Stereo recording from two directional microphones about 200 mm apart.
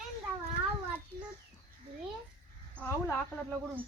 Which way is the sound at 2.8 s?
5° left (ahead or behind).